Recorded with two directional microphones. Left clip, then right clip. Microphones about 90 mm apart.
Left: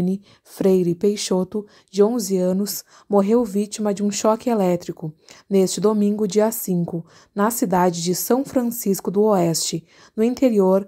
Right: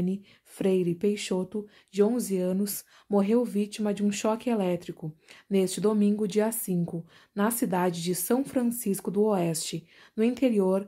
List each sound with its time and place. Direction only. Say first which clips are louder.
0.0 s speech: left 7 dB; 60° left (ahead or behind)
2.1 s speech: left 8 dB; 40° left (ahead or behind)